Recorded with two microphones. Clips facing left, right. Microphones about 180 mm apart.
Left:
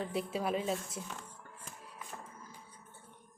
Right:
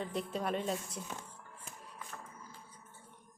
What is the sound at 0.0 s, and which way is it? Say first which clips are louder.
A woman's voice: left 2 dB; 5° left (ahead or behind).